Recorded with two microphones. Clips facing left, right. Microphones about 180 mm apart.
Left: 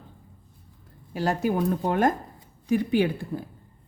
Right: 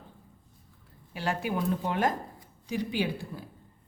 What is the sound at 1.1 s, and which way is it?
Speech, 40° left (ahead or behind).